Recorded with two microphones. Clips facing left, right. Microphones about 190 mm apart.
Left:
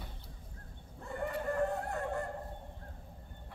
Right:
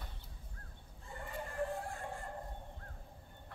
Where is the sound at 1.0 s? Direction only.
65° left (ahead or behind).